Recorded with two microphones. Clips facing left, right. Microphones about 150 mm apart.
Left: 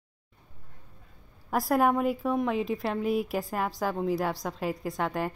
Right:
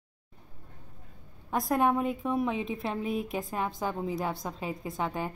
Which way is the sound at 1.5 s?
Centre (ahead or behind).